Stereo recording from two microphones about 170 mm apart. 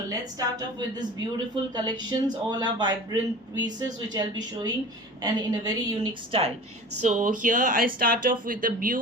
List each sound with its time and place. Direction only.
0.1 s a man's voice: 20° right (ahead or behind)
7.0 s speech: 45° right (ahead or behind)